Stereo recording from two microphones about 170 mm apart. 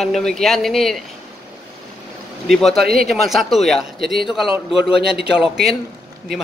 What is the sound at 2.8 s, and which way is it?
Speech, 60° right (ahead or behind).